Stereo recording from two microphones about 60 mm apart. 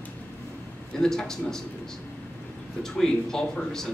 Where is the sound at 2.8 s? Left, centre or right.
Centre.